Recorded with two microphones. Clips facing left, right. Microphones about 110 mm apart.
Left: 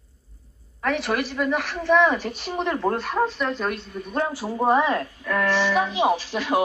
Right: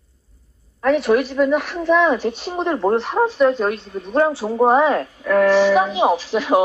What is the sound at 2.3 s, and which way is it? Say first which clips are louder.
A woman's voice: right 5 dB; 30° right (ahead or behind).